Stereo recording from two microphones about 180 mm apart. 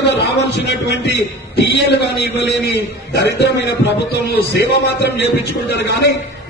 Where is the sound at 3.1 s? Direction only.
65° left (ahead or behind).